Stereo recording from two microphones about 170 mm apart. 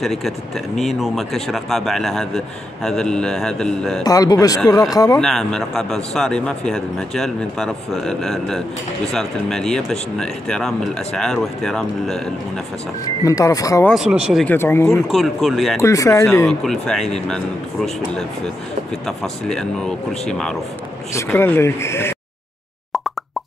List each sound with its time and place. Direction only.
0.0 s a man's voice: centre (ahead or behind)
4.0 s speech: 20° left (ahead or behind)
5.2 s a man's voice: centre (ahead or behind)
13.2 s speech: 20° left (ahead or behind)
13.8 s a man's voice: 5° right (ahead or behind)
14.4 s speech: 15° left (ahead or behind)
15.0 s a man's voice: centre (ahead or behind)
15.8 s speech: 20° left (ahead or behind)
16.6 s a man's voice: centre (ahead or behind)
19.0 s a man's voice: 5° left (ahead or behind)
21.1 s speech: 15° left (ahead or behind)